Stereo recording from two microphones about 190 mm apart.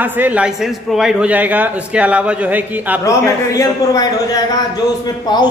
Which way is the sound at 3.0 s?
15° left (ahead or behind).